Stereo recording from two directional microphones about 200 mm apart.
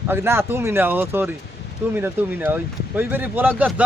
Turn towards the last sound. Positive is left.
turn(degrees=-10)  # may be behind; listen again after turning